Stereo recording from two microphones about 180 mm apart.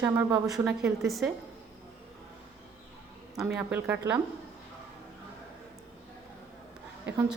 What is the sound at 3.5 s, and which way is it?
Speech, 10° right (ahead or behind).